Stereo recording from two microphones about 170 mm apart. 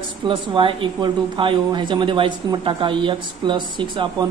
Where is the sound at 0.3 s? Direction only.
30° right (ahead or behind).